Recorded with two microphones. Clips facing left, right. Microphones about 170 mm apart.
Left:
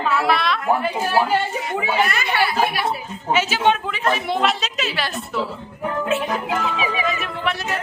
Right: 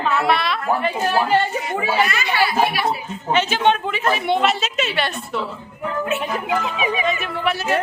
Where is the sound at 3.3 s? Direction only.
5° left (ahead or behind).